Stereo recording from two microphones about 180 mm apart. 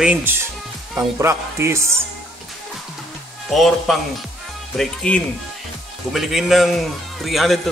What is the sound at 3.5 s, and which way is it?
A man's voice, centre (ahead or behind).